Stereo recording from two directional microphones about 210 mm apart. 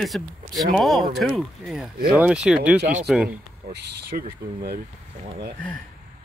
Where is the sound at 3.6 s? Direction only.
50° right (ahead or behind).